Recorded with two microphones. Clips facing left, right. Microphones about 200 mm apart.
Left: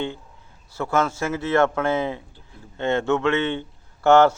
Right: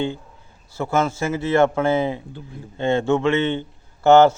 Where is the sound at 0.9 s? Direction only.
25° right (ahead or behind).